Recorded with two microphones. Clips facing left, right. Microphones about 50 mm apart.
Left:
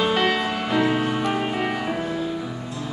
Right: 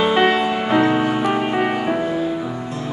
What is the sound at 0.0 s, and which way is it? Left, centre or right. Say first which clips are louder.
Music: right 5 dB; right.